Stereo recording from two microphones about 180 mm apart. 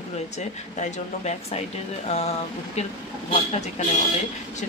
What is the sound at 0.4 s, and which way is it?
Speech, 40° left (ahead or behind).